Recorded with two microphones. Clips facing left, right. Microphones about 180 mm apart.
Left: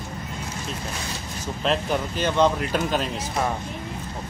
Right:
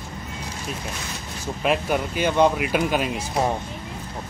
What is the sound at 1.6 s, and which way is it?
Speech, 10° right (ahead or behind).